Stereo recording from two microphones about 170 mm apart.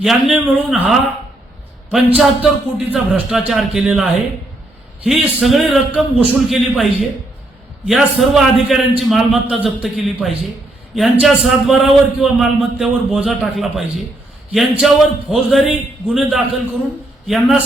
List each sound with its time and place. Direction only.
0.0 s a man's voice: centre (ahead or behind)